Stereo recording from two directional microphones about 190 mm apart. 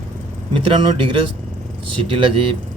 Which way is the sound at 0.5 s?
25° right (ahead or behind).